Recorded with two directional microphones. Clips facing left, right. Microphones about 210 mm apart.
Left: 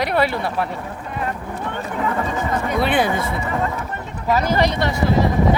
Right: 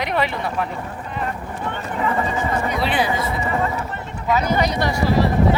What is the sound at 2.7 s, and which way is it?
Speech, 55° left (ahead or behind).